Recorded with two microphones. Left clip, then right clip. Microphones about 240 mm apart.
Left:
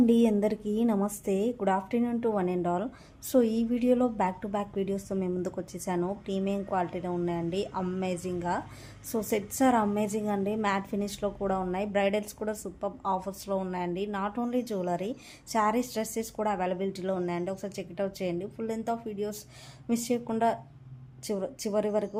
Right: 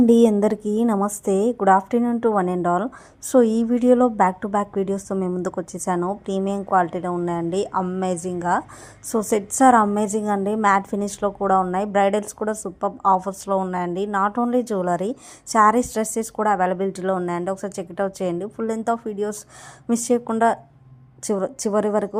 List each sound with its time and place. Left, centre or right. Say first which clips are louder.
0.0 s a woman's voice: right 9 dB; right